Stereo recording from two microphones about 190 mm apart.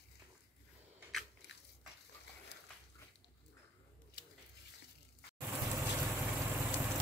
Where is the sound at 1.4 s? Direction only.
60° left (ahead or behind).